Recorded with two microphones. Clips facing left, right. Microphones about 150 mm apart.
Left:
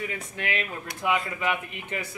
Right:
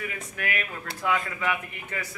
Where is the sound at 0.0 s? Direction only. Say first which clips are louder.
Left 1 dB; 25° left (ahead or behind).